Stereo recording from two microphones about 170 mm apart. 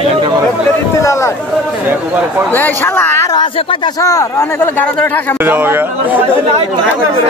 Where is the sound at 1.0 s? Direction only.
15° left (ahead or behind).